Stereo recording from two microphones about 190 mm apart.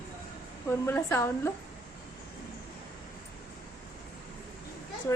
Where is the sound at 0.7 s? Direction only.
10° left (ahead or behind).